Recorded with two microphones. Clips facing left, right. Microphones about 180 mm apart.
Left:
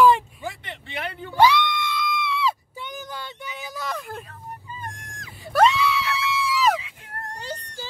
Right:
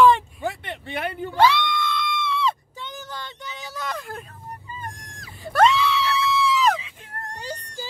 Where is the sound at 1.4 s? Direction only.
15° left (ahead or behind).